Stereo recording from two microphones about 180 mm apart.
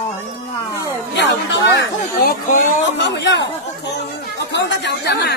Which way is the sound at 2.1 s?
55° left (ahead or behind).